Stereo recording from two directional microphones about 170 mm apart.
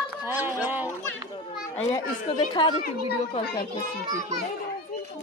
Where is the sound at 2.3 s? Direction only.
30° left (ahead or behind).